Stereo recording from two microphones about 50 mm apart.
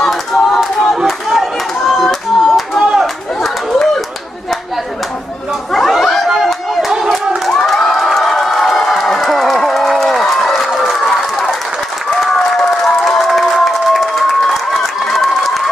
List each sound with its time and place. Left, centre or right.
0.0 s a sound: centre
3.4 s chatter: centre
5.7 s chatter: centre
7.6 s crowd: centre
11.1 s run: centre
12.4 s crowd: centre